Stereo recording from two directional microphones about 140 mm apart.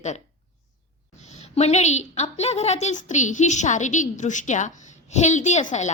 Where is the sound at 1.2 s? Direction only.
55° left (ahead or behind).